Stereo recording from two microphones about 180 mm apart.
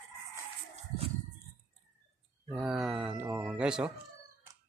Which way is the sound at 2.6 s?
5° right (ahead or behind).